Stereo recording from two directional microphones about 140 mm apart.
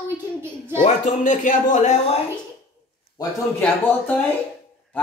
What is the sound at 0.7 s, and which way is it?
Speech, 60° left (ahead or behind).